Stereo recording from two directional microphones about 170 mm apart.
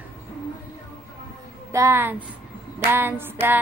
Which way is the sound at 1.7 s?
15° right (ahead or behind).